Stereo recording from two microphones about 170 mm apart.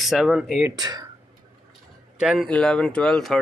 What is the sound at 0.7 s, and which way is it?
Speech, 25° right (ahead or behind).